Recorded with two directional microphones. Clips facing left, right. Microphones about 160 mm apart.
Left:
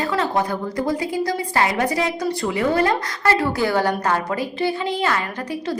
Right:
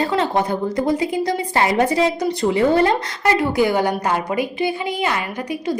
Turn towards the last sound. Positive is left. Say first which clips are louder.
# even
turn(degrees=-15)  # may be behind; listen again after turning